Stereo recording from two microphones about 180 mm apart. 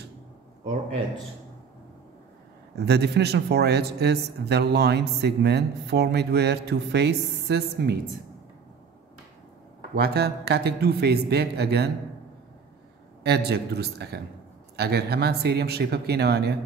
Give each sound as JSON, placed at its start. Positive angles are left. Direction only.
{"t": 2.7, "sound": "speech", "side_deg": -65}
{"t": 9.9, "sound": "a man's voice", "side_deg": -60}
{"t": 13.2, "sound": "a man's voice", "side_deg": -65}